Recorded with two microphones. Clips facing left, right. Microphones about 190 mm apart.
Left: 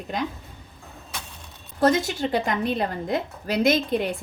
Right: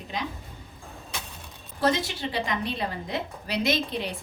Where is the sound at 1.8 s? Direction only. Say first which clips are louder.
Left 5 dB; 45° left (ahead or behind).